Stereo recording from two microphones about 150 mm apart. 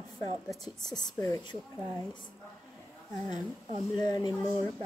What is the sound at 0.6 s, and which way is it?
Speech, 25° left (ahead or behind).